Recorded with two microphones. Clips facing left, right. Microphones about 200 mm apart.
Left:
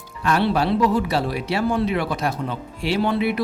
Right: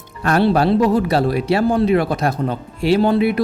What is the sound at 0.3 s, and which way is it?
Speech, 45° right (ahead or behind).